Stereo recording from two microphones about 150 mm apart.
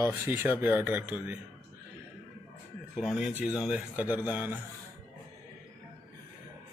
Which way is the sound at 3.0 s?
5° right (ahead or behind).